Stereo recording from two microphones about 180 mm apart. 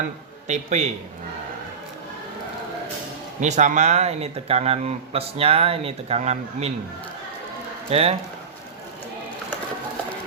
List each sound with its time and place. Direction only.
0.4 s speech: 40° right (ahead or behind)
3.4 s speech: 40° right (ahead or behind)
7.9 s speech: 35° right (ahead or behind)